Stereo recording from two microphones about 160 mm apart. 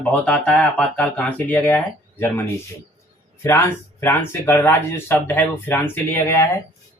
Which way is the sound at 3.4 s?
15° left (ahead or behind).